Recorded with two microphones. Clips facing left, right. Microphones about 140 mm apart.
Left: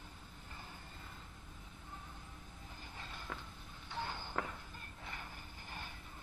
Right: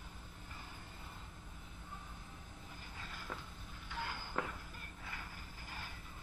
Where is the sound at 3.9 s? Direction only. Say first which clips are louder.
Left 2 dB; 25° left (ahead or behind).